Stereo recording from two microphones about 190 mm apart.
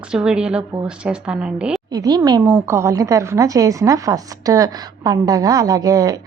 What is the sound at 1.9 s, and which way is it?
A woman's voice, 20° right (ahead or behind).